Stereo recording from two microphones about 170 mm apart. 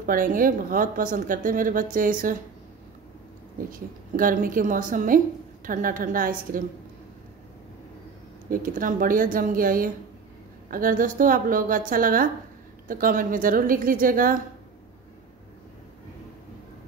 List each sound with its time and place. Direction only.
0.0 s a woman's voice: 55° right (ahead or behind)
3.7 s a woman's voice: 55° right (ahead or behind)
8.5 s a woman's voice: 55° right (ahead or behind)